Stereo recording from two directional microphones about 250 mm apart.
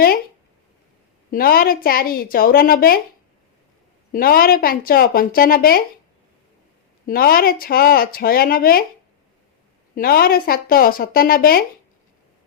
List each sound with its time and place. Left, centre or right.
1.3 s speech: left
4.1 s speech: left
7.1 s speech: left
9.9 s speech: left